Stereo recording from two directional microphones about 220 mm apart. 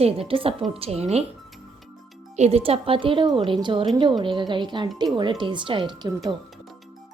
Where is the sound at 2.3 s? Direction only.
30° right (ahead or behind).